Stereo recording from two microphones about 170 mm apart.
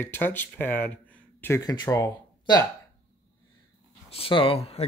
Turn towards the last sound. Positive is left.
turn(degrees=35)  # may be behind; listen again after turning